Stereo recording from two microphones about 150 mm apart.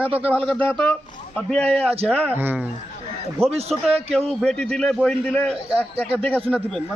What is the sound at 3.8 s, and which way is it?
A man's voice, 5° left (ahead or behind).